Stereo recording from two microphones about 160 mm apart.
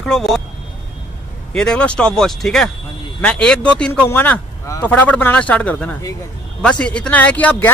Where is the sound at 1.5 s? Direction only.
5° left (ahead or behind).